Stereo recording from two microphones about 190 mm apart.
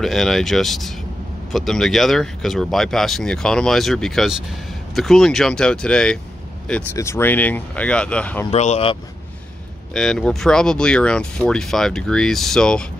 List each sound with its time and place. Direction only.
0.0 s speech: centre (ahead or behind)
8.5 s speech: 35° left (ahead or behind)
9.9 s speech: 5° left (ahead or behind)